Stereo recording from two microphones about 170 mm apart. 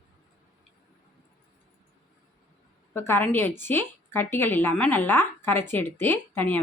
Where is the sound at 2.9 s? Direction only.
15° left (ahead or behind).